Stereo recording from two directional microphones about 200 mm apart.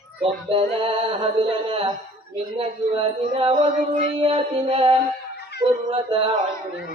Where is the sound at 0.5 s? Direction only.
30° right (ahead or behind).